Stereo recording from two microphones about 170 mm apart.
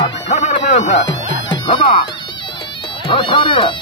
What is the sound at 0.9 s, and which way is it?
Music, 90° left.